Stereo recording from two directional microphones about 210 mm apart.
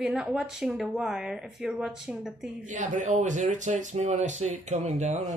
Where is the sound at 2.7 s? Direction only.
35° right (ahead or behind).